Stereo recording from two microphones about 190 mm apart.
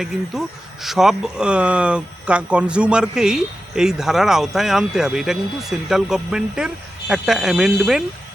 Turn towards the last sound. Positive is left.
turn(degrees=-5)  # may be behind; listen again after turning